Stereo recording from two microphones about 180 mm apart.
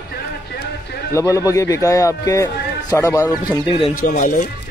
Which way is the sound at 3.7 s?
30° left (ahead or behind).